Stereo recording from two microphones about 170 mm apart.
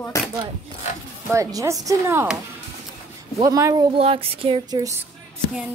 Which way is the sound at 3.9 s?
35° right (ahead or behind).